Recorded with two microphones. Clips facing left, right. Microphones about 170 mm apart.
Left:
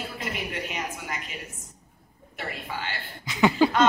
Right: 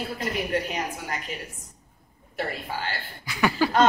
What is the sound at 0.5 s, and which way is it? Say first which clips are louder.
Speech: right 5 dB; 40° right (ahead or behind).